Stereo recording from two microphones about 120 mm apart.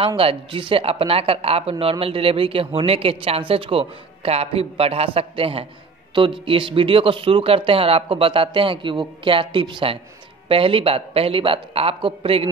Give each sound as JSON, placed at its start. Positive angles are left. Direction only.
{"t": 0.0, "sound": "speech", "side_deg": -50}